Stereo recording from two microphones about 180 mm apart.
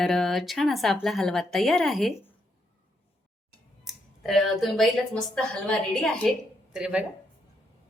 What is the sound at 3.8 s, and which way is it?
Speech, centre (ahead or behind).